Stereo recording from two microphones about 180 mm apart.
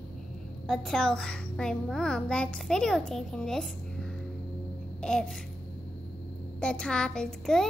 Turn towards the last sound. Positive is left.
turn(degrees=5)  # may be behind; listen again after turning